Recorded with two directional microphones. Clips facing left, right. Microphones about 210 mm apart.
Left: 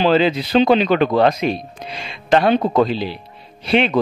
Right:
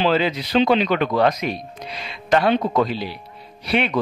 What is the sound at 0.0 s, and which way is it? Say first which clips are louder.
Speech: left 4 dB; 30° left (ahead or behind).